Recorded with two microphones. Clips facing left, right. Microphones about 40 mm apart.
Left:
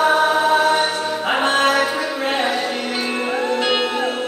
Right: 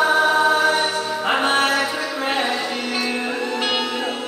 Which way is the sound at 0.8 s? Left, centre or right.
Left.